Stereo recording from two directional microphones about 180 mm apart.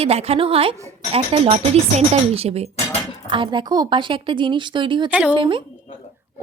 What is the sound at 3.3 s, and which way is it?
Speech, 25° right (ahead or behind).